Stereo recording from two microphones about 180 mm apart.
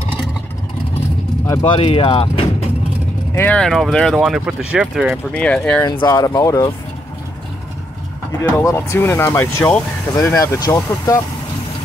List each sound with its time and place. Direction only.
1.7 s speech: 30° left (ahead or behind)
3.3 s speech: 5° left (ahead or behind)
5.9 s speech: 20° left (ahead or behind)
8.3 s speech: 15° left (ahead or behind)